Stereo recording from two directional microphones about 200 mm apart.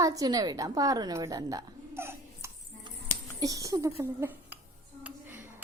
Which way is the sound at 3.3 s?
15° right (ahead or behind).